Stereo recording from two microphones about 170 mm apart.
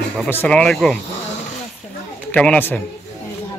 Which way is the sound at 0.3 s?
10° left (ahead or behind).